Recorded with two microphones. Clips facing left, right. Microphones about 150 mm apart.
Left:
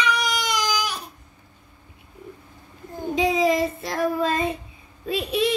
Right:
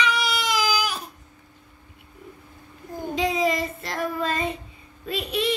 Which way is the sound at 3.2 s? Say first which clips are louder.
Left 3 dB; centre (ahead or behind).